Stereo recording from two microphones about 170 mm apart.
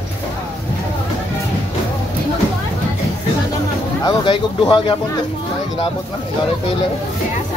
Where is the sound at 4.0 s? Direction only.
25° left (ahead or behind).